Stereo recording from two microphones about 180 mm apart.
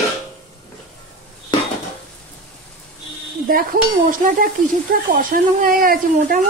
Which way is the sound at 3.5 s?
50° right (ahead or behind).